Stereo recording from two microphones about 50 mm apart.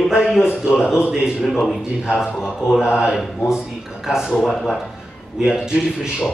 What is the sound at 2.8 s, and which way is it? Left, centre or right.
Speech, centre.